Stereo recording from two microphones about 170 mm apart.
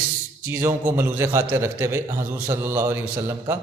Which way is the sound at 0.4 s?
15° right (ahead or behind).